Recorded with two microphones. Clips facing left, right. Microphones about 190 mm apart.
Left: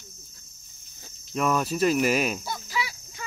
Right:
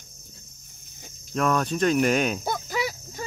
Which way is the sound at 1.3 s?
5° left (ahead or behind).